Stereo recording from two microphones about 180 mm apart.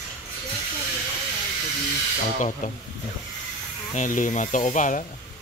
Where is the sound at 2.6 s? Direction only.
45° left (ahead or behind).